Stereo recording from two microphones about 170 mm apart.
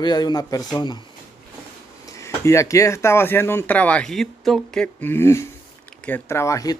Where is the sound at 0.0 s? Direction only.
25° left (ahead or behind).